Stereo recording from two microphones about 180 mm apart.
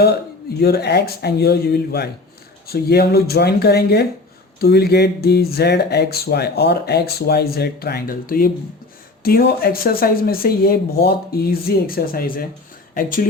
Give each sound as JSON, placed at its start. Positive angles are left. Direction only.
{"t": 0.6, "sound": "speech", "side_deg": 65}